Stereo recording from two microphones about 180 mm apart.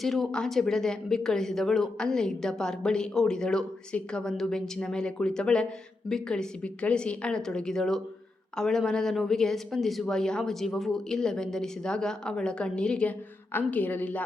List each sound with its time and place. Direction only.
0.0 s speech: centre (ahead or behind)